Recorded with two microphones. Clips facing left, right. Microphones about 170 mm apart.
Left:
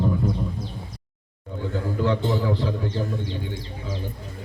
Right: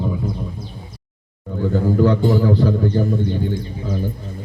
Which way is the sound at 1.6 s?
45° right (ahead or behind).